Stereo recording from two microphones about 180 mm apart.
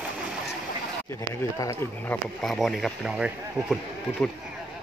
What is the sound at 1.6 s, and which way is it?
Speech, 15° left (ahead or behind).